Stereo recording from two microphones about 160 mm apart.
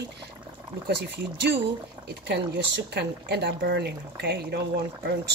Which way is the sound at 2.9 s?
85° right.